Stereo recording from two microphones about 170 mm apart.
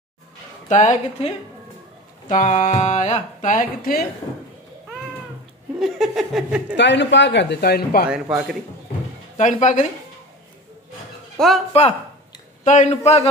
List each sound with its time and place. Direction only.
0.7 s speech: 45° left (ahead or behind)
5.8 s speech: centre (ahead or behind)
6.8 s speech: 90° left; by 8.1 s 65° left (ahead or behind)
8.1 s speech: 5° right (ahead or behind)
9.4 s speech: 45° left (ahead or behind)
11.3 s speech: centre (ahead or behind)
12.6 s a man's voice: 45° left (ahead or behind)